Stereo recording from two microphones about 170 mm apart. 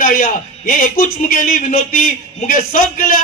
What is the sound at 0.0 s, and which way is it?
A man's voice, 55° left (ahead or behind).